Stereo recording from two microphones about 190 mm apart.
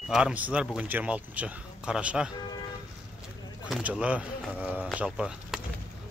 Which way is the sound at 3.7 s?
5° right (ahead or behind).